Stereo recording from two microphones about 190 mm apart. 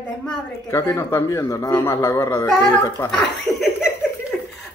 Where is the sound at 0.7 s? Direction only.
15° left (ahead or behind).